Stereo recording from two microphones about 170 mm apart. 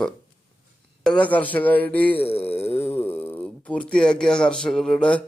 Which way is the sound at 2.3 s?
35° left (ahead or behind).